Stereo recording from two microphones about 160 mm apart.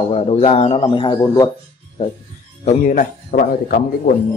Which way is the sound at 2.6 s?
55° left (ahead or behind).